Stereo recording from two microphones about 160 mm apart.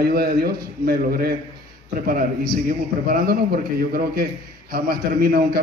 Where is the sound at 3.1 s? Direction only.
65° right (ahead or behind).